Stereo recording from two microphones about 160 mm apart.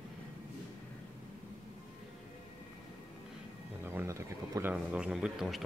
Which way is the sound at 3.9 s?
15° right (ahead or behind).